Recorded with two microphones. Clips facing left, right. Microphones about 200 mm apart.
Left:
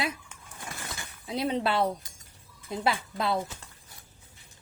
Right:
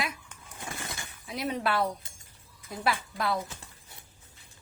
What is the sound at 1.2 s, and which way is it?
A woman's voice, 30° left (ahead or behind).